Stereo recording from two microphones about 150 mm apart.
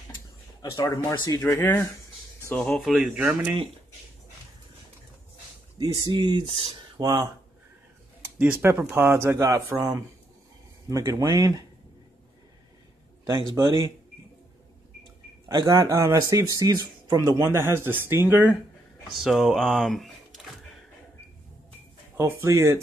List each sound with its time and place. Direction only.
0.6 s speech: 25° left (ahead or behind)
1.4 s speech: 15° left (ahead or behind); by 3.5 s 10° right (ahead or behind)
5.8 s speech: 30° right (ahead or behind)
8.4 s speech: 15° right (ahead or behind)
13.2 s speech: 25° right (ahead or behind)
15.4 s speech: 25° right (ahead or behind)
19.1 s speech: 5° right (ahead or behind)
22.1 s speech: 15° right (ahead or behind)